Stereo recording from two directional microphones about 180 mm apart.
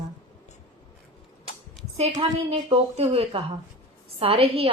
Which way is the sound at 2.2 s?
30° right (ahead or behind).